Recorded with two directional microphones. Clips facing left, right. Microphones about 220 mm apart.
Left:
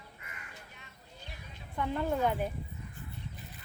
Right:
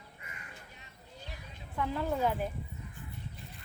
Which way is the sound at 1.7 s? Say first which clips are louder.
Left 1 dB; centre (ahead or behind).